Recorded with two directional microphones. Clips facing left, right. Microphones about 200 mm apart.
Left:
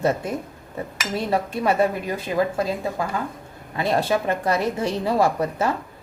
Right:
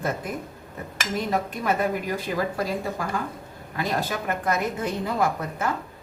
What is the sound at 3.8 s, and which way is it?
A woman's voice, 25° left (ahead or behind).